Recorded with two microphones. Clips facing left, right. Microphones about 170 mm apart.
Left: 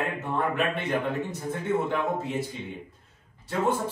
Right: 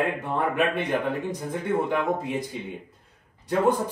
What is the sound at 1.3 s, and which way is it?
A man's voice, 10° right (ahead or behind).